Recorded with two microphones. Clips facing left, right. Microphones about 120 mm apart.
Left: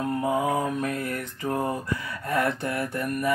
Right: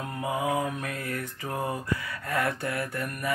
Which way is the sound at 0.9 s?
20° left (ahead or behind).